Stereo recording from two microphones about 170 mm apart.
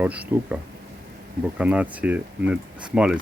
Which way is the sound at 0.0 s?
10° right (ahead or behind).